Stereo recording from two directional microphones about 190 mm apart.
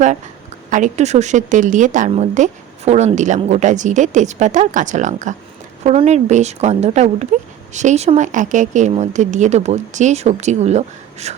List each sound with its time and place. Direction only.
0.7 s a woman's voice: 40° right (ahead or behind)